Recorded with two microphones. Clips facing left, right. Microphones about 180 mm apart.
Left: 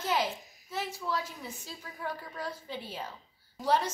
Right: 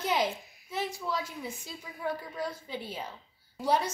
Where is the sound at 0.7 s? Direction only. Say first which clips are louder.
Right 1 dB; 15° right (ahead or behind).